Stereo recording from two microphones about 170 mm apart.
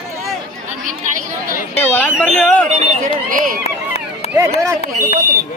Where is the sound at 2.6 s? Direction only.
50° right (ahead or behind).